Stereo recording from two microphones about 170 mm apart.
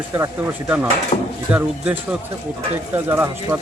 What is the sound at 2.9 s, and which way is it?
Cutlery, 10° right (ahead or behind).